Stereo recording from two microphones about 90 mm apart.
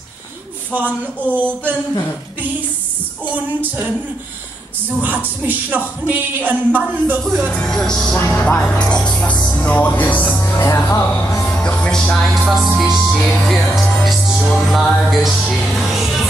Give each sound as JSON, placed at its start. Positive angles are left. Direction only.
{"t": 0.7, "sound": "speech", "side_deg": -20}
{"t": 3.3, "sound": "music", "side_deg": -15}
{"t": 5.0, "sound": "speech", "side_deg": -20}
{"t": 7.5, "sound": "speech", "side_deg": 5}
{"t": 11.4, "sound": "music", "side_deg": 10}